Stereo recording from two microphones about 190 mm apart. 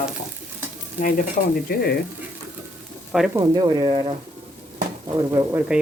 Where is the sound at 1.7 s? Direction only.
50° left (ahead or behind).